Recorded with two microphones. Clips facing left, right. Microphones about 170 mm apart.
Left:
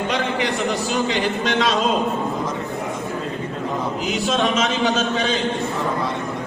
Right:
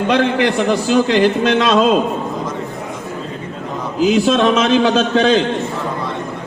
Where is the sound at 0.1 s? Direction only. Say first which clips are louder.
Right 11 dB; 70° right (ahead or behind).